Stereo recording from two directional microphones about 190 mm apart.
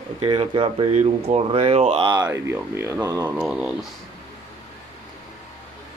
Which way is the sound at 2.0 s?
20° right (ahead or behind).